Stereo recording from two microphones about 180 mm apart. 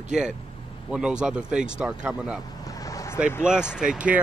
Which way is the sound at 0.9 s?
5° right (ahead or behind).